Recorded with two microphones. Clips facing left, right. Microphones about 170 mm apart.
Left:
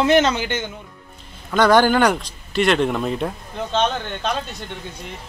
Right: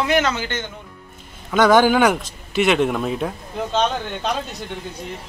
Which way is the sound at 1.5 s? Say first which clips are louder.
Right 1 dB; 5° right (ahead or behind).